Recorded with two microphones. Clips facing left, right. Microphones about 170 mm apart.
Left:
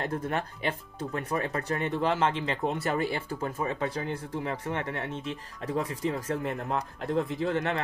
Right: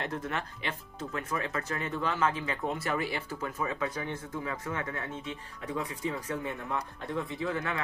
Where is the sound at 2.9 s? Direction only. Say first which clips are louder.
Left 3 dB; 40° left (ahead or behind).